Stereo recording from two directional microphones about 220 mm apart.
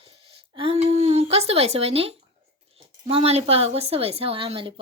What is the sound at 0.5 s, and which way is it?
Speech, 25° right (ahead or behind).